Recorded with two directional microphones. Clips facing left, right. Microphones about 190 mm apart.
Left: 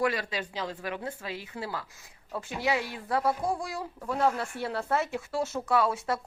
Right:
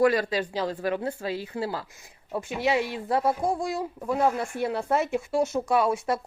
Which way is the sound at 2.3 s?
20° right (ahead or behind).